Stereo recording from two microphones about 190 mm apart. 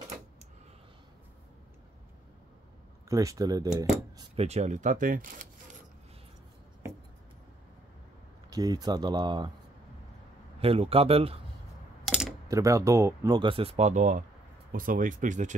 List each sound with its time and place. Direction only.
3.1 s speech: 15° right (ahead or behind)
4.2 s speech: 35° right (ahead or behind)
8.5 s speech: 20° right (ahead or behind)
10.6 s speech: 30° right (ahead or behind)
12.0 s coin: centre (ahead or behind)
12.4 s speech: 15° right (ahead or behind); by 15.5 s 40° right (ahead or behind)